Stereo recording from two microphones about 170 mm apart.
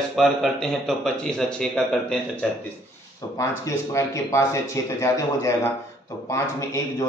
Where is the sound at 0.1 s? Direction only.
Centre (ahead or behind).